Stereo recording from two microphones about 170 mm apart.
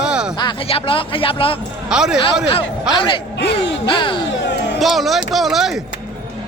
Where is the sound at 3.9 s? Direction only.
30° left (ahead or behind).